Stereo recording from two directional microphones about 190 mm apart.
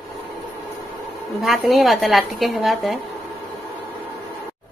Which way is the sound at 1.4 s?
Centre (ahead or behind).